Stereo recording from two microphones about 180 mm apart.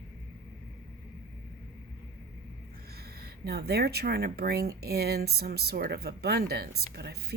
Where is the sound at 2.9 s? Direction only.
60° right (ahead or behind).